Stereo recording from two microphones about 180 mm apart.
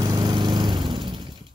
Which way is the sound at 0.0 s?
25° right (ahead or behind).